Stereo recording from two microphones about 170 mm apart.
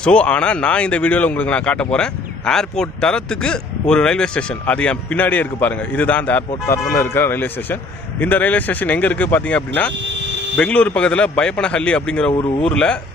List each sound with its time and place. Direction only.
0.0 s speech: 5° left (ahead or behind)
12.3 s speech: 30° left (ahead or behind)
12.6 s speech: 5° left (ahead or behind)